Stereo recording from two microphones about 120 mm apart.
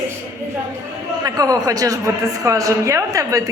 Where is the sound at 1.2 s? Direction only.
30° right (ahead or behind).